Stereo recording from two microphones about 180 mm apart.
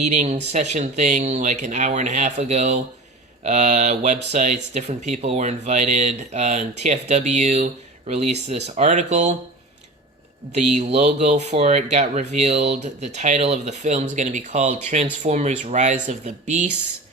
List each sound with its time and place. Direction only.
0.0 s speech: 40° right (ahead or behind)
10.5 s speech: 40° right (ahead or behind)